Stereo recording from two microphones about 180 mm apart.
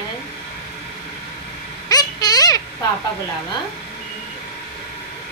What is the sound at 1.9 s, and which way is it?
Vehicle, 20° left (ahead or behind).